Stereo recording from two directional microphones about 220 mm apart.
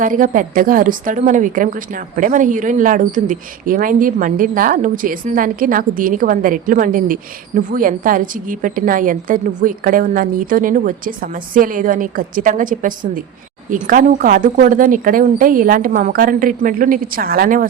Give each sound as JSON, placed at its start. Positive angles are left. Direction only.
{"t": 0.0, "sound": "speech", "side_deg": -35}